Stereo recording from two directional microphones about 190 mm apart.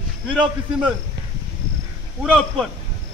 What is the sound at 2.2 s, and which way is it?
Speech, centre (ahead or behind).